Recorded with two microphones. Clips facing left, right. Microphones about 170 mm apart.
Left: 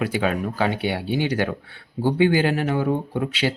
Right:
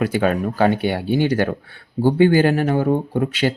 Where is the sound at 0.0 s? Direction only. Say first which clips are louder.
Right 4 dB; 45° right (ahead or behind).